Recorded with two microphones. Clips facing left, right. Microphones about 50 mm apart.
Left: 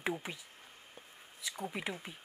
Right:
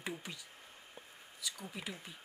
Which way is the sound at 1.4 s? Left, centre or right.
Left.